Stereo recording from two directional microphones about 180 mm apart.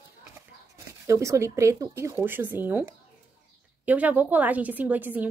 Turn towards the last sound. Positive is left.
turn(degrees=-10)  # may be behind; listen again after turning